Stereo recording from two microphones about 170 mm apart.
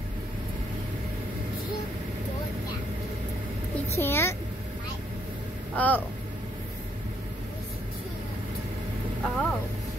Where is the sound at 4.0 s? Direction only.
15° left (ahead or behind).